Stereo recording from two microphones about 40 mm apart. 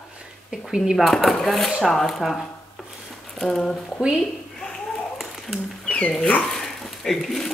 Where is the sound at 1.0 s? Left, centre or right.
Centre.